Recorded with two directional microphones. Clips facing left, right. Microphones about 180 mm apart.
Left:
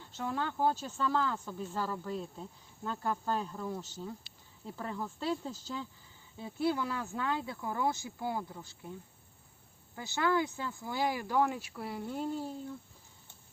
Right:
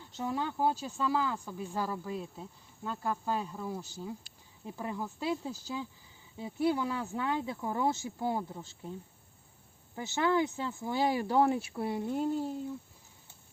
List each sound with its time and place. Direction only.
0.1 s speech: 15° right (ahead or behind)
9.9 s speech: 20° right (ahead or behind)